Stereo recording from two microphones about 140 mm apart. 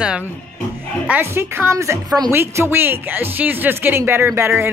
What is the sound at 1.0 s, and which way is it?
Speech, 15° right (ahead or behind).